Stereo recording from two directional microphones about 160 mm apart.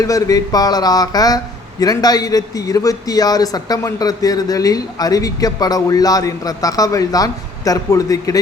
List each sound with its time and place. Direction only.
0.0 s a man's voice: 20° left (ahead or behind)